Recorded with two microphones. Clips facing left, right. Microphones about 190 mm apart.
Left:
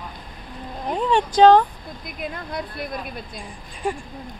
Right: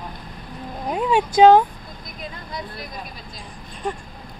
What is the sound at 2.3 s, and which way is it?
Speech, 55° left (ahead or behind).